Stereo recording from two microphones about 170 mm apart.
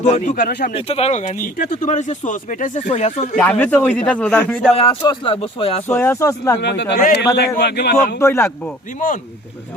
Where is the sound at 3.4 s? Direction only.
10° left (ahead or behind).